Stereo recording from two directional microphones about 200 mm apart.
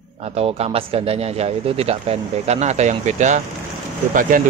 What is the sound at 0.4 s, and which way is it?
Speech, 30° right (ahead or behind).